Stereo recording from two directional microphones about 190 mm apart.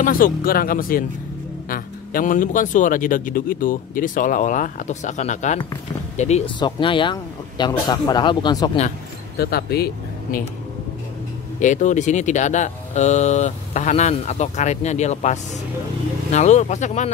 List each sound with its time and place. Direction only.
0.0 s a man's voice: 50° left (ahead or behind); by 8.7 s 20° left (ahead or behind)
9.4 s speech: 55° left (ahead or behind)
11.6 s speech: 40° left (ahead or behind)